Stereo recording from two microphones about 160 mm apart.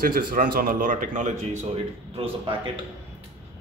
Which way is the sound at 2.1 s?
35° right (ahead or behind).